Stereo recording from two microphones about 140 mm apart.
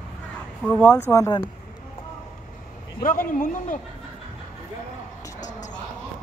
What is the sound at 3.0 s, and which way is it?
Speech, 90° left.